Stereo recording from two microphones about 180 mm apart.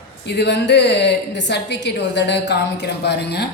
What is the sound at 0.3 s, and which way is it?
A woman's voice, 75° left (ahead or behind).